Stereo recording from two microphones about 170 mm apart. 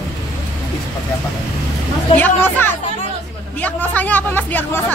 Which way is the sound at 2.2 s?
10° left (ahead or behind).